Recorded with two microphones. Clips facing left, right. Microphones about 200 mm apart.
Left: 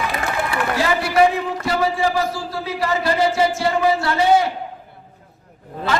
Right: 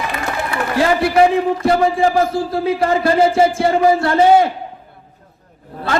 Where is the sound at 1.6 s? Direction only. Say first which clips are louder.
Right 4 dB; 50° right (ahead or behind).